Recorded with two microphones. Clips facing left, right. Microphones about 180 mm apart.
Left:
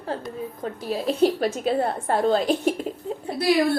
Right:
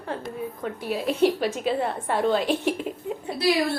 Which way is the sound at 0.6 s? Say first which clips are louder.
Left 1 dB; 35° left (ahead or behind).